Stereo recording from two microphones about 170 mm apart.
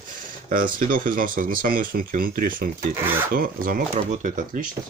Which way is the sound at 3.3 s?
55° right (ahead or behind).